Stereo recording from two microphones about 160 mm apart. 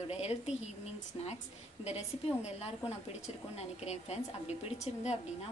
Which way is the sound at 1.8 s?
45° left (ahead or behind).